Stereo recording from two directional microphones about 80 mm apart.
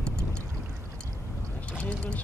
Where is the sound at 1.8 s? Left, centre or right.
Centre.